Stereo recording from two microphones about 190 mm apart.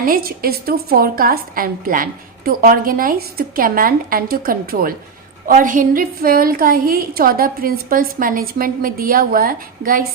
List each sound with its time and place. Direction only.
0.0 s a woman's voice: 50° right (ahead or behind)